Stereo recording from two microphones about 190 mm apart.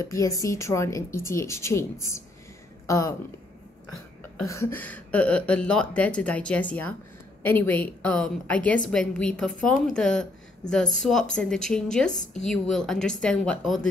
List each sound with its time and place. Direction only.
0.0 s a woman's voice: 15° left (ahead or behind)
2.9 s a woman's voice: 15° left (ahead or behind)
4.5 s a woman's voice: 15° left (ahead or behind)
12.1 s a woman's voice: 40° left (ahead or behind)
12.4 s speech: 5° left (ahead or behind)